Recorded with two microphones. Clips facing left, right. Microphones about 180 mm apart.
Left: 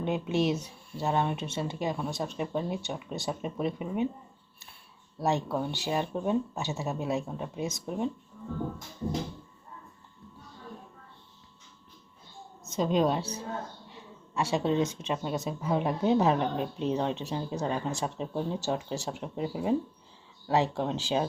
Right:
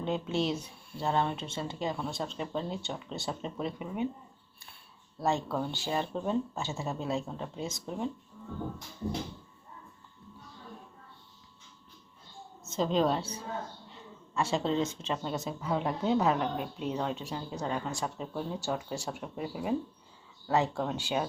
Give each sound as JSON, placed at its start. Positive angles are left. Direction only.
{"t": 0.0, "sound": "speech", "side_deg": 20}
{"t": 5.2, "sound": "speech", "side_deg": 20}
{"t": 12.7, "sound": "speech", "side_deg": 15}
{"t": 14.3, "sound": "speech", "side_deg": 20}